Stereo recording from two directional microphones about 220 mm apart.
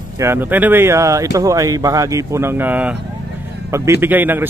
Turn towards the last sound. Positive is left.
turn(degrees=-10)  # may be behind; listen again after turning